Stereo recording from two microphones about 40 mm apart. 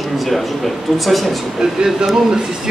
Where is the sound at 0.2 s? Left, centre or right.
Centre.